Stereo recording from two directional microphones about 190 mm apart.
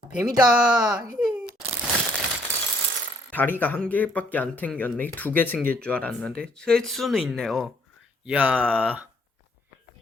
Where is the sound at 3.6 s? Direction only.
10° left (ahead or behind).